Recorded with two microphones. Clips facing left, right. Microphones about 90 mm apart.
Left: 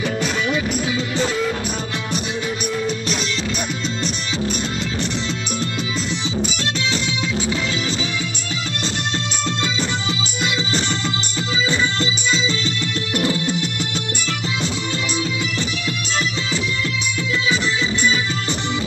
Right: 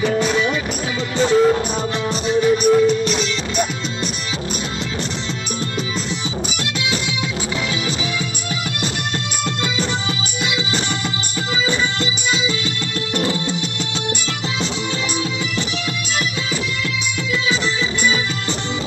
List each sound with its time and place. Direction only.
0.0 s music: 40° right (ahead or behind)
2.2 s music: 40° right (ahead or behind)
13.1 s music: 25° right (ahead or behind)